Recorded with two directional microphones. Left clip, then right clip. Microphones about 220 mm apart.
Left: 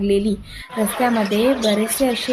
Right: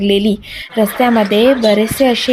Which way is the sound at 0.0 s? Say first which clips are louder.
Right 5 dB; 30° right (ahead or behind).